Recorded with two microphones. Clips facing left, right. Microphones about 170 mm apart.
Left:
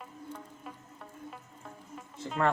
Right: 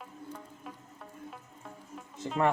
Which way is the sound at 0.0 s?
Centre (ahead or behind).